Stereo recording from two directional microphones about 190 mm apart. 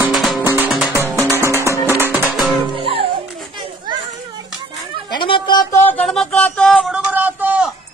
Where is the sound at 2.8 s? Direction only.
30° right (ahead or behind).